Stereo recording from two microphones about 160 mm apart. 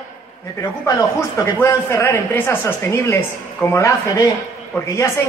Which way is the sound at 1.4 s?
15° left (ahead or behind).